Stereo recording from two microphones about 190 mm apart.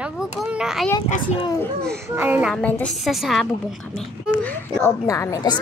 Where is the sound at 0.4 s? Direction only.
5° right (ahead or behind).